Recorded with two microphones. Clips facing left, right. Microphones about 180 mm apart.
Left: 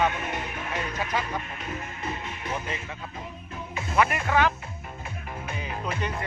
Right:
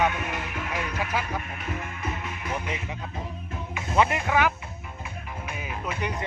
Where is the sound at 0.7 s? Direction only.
10° right (ahead or behind).